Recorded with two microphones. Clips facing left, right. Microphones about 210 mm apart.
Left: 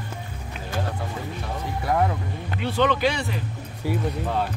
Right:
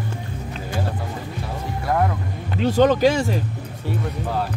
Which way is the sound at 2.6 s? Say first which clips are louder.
Right 6 dB; 40° right (ahead or behind).